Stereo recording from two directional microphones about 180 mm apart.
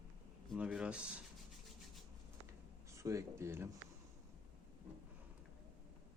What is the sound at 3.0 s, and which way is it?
Speech, 15° right (ahead or behind).